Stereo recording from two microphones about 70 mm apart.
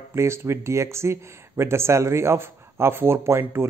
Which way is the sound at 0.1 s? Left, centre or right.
Right.